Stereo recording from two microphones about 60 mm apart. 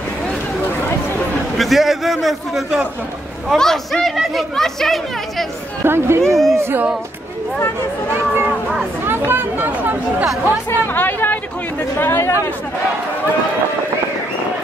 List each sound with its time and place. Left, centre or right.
1.6 s speech: centre
5.9 s speech: right
6.2 s speech: centre
6.5 s speech: right
9.0 s speech: right
10.4 s speech: left